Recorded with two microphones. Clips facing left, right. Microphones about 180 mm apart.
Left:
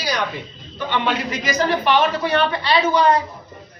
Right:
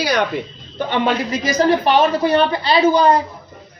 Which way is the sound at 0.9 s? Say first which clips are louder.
Right 4 dB; 35° right (ahead or behind).